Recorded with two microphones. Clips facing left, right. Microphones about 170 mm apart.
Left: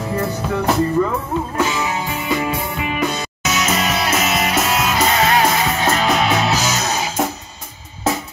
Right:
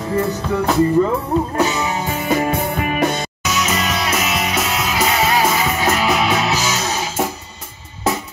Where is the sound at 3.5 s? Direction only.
Centre (ahead or behind).